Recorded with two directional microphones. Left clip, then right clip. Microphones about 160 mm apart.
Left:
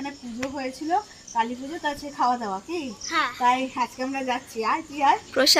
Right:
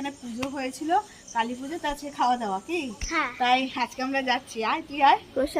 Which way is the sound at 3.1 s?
30° right (ahead or behind).